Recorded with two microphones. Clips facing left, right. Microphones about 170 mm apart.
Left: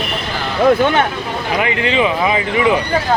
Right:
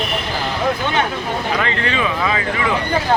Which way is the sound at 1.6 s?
15° left (ahead or behind).